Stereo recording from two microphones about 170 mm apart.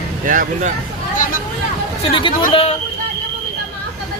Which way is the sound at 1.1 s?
50° left (ahead or behind).